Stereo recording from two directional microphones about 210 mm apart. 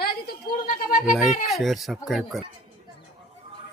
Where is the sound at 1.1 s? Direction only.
Centre (ahead or behind).